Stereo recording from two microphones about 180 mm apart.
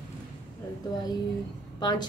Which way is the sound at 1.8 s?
25° left (ahead or behind).